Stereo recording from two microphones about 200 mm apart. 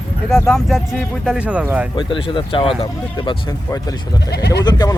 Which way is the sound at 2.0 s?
25° left (ahead or behind).